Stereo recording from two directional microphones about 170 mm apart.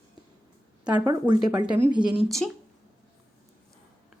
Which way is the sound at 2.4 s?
Centre (ahead or behind).